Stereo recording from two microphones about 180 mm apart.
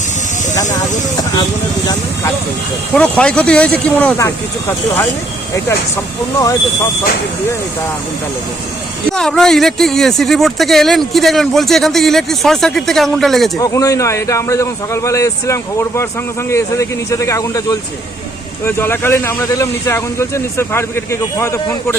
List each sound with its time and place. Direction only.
2.9 s speech: 5° left (ahead or behind)
9.1 s speech: 5° left (ahead or behind)
13.6 s speech: 20° left (ahead or behind)